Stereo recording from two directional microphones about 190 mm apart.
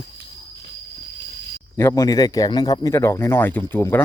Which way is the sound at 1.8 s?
15° left (ahead or behind).